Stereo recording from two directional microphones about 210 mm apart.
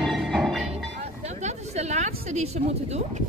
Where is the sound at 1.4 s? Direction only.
35° right (ahead or behind).